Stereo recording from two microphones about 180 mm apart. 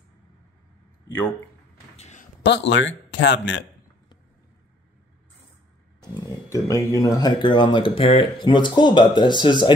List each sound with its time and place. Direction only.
2.0 s a sound: 40° left (ahead or behind)
2.4 s speech: 75° left (ahead or behind)
5.9 s speech: 20° left (ahead or behind)